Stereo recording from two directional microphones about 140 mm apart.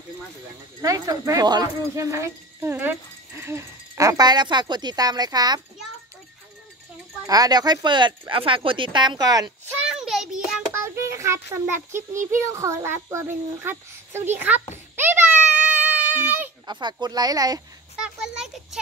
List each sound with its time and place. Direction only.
0.7 s speech: 25° right (ahead or behind)
7.2 s speech: 30° right (ahead or behind)
9.8 s a sound: 5° right (ahead or behind)
10.7 s a child's voice: 20° right (ahead or behind)
15.0 s a sound: 15° right (ahead or behind)
15.6 s baby cry: 10° right (ahead or behind)
16.6 s speech: 30° right (ahead or behind)
17.9 s a child's voice: 5° right (ahead or behind)